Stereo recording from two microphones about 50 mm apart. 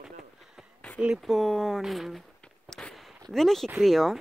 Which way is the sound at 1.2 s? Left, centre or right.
Centre.